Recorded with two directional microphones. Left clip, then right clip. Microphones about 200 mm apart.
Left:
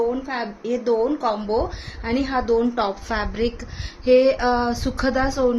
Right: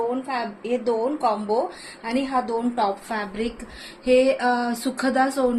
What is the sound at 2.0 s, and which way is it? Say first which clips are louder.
A woman's voice: left 1 dB; 40° left (ahead or behind).